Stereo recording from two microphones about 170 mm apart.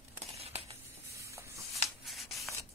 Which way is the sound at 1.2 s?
20° right (ahead or behind).